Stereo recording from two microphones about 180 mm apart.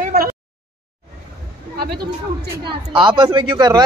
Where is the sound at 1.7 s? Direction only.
60° right (ahead or behind).